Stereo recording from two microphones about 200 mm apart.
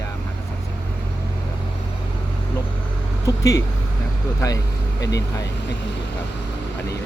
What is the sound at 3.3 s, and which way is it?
Speech, 15° left (ahead or behind).